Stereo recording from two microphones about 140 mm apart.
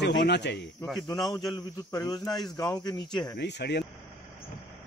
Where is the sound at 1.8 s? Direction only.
25° left (ahead or behind).